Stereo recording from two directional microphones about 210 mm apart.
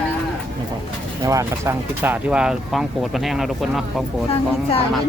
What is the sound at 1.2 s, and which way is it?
Speech, 15° right (ahead or behind).